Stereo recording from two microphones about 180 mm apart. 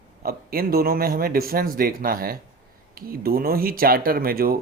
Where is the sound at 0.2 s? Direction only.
55° right (ahead or behind).